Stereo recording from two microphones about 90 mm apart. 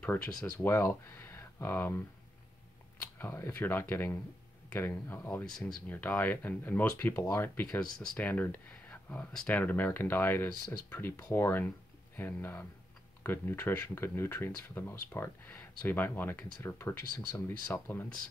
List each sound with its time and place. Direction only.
0.0 s speech: 15° left (ahead or behind)
1.0 s speech: 30° left (ahead or behind)
3.2 s speech: 30° left (ahead or behind)
5.4 s speech: 5° left (ahead or behind)
5.9 s speech: 20° left (ahead or behind)